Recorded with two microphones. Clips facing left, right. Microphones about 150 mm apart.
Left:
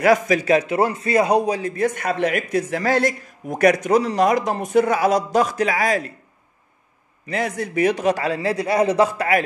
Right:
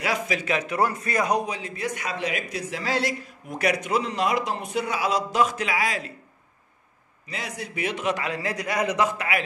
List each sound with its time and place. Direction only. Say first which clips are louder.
0.0 s a man's voice: left 10 dB; 45° left (ahead or behind)
7.2 s a man's voice: left 10 dB; 50° left (ahead or behind); by 9.4 s 35° left (ahead or behind)